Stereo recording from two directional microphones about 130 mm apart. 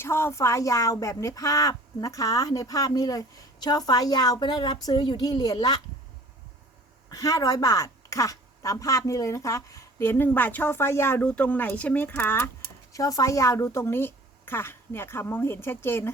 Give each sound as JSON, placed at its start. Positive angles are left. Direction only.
{"t": 0.0, "sound": "speech", "side_deg": 20}
{"t": 7.1, "sound": "speech", "side_deg": 25}
{"t": 12.9, "sound": "speech", "side_deg": 25}